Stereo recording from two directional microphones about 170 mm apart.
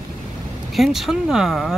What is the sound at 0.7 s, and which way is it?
Speech, centre (ahead or behind).